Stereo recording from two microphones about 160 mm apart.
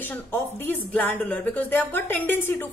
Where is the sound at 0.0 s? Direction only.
10° left (ahead or behind).